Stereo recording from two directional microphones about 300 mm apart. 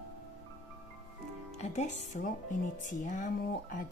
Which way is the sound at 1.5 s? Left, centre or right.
Left.